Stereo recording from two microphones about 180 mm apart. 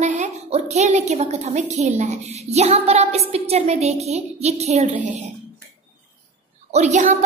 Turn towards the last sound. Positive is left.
turn(degrees=-40)  # may be behind; listen again after turning